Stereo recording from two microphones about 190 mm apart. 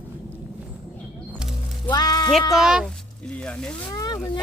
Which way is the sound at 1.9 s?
20° left (ahead or behind).